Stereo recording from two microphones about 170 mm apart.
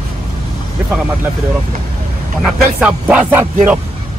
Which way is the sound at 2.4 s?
5° right (ahead or behind).